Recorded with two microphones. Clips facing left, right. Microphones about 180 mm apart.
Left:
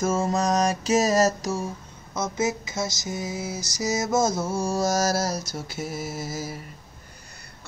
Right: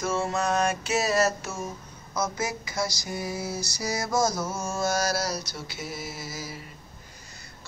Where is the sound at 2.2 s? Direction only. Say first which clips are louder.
Left 3 dB; 25° left (ahead or behind); by 6.5 s 50° left (ahead or behind).